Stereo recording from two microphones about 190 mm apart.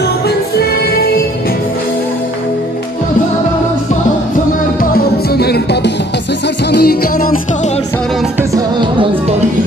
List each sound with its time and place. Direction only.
0.6 s music: 55° left (ahead or behind)
4.9 s music: 55° left (ahead or behind)
8.4 s music: 20° right (ahead or behind)